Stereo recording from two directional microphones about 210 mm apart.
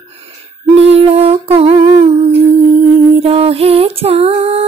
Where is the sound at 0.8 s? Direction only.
30° right (ahead or behind).